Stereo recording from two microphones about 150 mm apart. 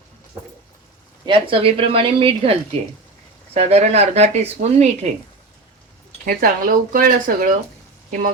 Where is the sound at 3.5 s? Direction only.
45° right (ahead or behind).